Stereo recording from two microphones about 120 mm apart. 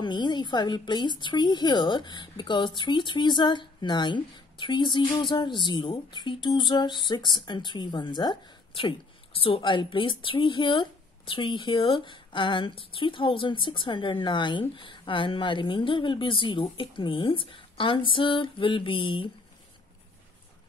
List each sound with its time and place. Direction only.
0.0 s a woman's voice: 40° left (ahead or behind)